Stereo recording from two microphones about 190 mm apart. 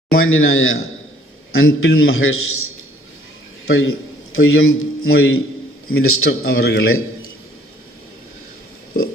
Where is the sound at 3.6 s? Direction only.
90° left.